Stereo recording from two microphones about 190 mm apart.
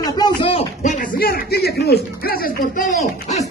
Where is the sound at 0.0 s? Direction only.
25° left (ahead or behind).